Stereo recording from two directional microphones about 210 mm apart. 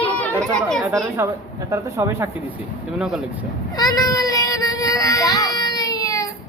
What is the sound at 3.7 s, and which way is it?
Child singing, 15° left (ahead or behind).